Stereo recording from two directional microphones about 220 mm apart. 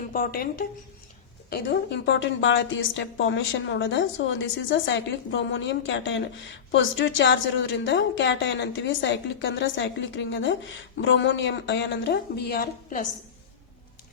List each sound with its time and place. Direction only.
0.1 s a woman's voice: 40° left (ahead or behind)